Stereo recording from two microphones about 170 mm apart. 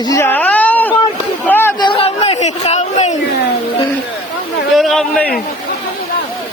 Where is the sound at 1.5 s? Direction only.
15° left (ahead or behind).